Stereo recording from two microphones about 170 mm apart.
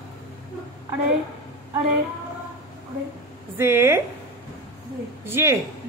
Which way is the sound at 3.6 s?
15° right (ahead or behind).